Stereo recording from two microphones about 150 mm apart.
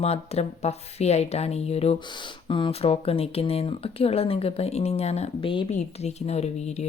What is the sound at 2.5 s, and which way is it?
Speech, 35° left (ahead or behind).